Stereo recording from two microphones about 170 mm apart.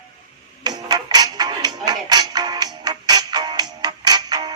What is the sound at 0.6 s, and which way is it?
Music, 25° right (ahead or behind).